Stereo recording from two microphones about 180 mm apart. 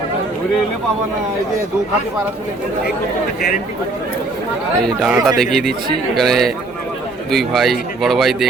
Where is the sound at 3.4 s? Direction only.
55° left (ahead or behind).